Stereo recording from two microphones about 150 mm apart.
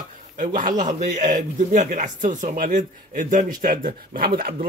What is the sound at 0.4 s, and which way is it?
A man's voice, 60° right (ahead or behind).